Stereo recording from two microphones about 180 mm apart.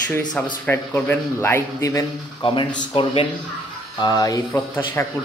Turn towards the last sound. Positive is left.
turn(degrees=10)  # may be behind; listen again after turning